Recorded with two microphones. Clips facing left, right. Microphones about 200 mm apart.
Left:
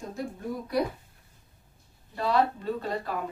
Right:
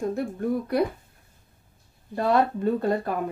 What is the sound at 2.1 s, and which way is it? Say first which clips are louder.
Speech: right 4 dB; 50° right (ahead or behind).